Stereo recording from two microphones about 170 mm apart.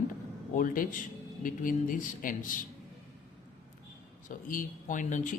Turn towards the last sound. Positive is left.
turn(degrees=50)  # may be behind; listen again after turning